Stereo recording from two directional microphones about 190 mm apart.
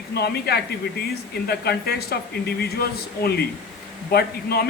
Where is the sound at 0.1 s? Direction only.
55° left (ahead or behind).